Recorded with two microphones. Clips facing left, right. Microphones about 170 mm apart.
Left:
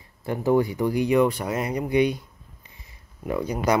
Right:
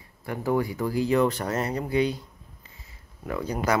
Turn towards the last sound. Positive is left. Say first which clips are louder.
# left 3 dB
turn(degrees=15)  # may be behind; listen again after turning